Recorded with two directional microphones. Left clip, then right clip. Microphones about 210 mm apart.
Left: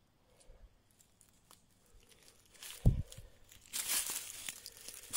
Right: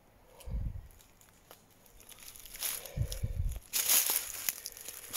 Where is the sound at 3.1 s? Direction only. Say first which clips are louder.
Right 11 dB; centre (ahead or behind).